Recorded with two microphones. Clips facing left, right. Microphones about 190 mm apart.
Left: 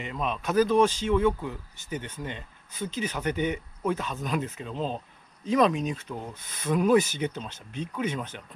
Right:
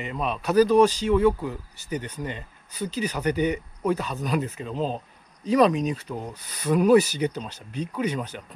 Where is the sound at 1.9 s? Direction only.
40° right (ahead or behind).